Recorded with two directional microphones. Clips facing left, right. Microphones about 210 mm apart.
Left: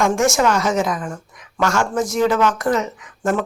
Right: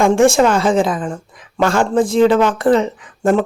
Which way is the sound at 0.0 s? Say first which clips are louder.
Right 6 dB; 30° right (ahead or behind).